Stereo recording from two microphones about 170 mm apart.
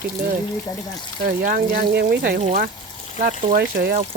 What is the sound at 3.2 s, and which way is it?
Speech, 45° right (ahead or behind).